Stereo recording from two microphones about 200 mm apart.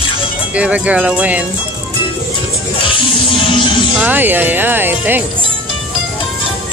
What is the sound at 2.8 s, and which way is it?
Music, 25° left (ahead or behind).